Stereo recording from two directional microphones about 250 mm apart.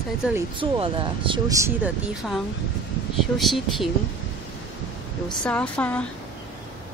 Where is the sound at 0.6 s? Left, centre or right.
Right; by 3.9 s centre.